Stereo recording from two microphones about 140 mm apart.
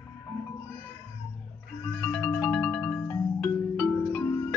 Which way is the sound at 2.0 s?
15° left (ahead or behind).